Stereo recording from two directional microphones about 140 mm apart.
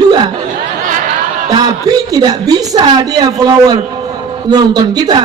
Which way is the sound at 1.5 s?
30° right (ahead or behind).